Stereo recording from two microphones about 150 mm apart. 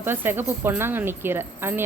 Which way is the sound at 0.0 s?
15° right (ahead or behind).